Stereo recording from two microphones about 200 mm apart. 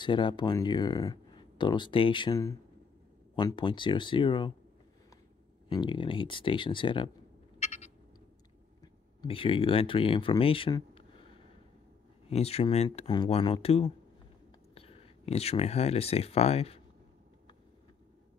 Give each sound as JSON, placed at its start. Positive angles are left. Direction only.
{"t": 0.0, "sound": "speech", "side_deg": 25}
{"t": 5.7, "sound": "speech", "side_deg": 20}
{"t": 7.5, "sound": "a sound", "side_deg": 35}
{"t": 8.8, "sound": "speech", "side_deg": 25}
{"t": 12.3, "sound": "speech", "side_deg": 30}